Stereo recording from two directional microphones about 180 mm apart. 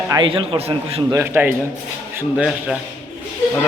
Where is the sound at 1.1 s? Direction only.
15° right (ahead or behind).